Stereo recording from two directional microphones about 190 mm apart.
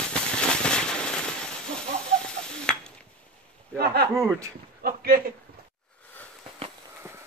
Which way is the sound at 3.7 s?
55° right (ahead or behind).